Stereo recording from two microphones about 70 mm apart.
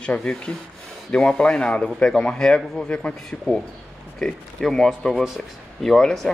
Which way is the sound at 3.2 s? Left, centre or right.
Centre.